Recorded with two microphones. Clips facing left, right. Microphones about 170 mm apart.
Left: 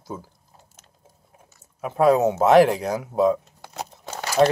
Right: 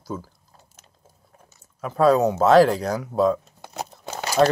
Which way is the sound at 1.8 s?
20° left (ahead or behind).